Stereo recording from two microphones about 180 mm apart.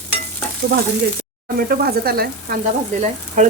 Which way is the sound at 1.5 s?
60° right (ahead or behind).